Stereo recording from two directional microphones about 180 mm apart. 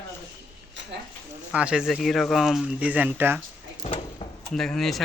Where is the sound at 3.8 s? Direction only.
30° left (ahead or behind).